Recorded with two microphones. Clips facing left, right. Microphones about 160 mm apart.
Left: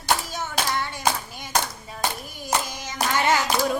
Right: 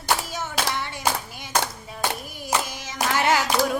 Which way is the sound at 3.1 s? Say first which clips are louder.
Right 1 dB; 5° right (ahead or behind).